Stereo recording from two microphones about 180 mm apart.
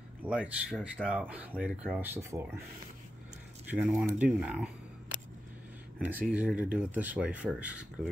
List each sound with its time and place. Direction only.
0.3 s speech: 5° right (ahead or behind)
3.7 s speech: 5° right (ahead or behind)
5.9 s speech: 5° right (ahead or behind)